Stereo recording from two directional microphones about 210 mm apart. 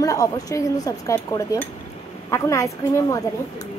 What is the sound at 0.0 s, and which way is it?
Speech, 15° left (ahead or behind).